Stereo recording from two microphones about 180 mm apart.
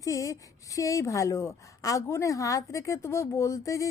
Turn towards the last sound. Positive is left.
turn(degrees=15)  # may be behind; listen again after turning